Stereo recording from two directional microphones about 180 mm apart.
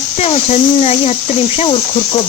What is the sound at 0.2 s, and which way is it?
Speech, 35° left (ahead or behind).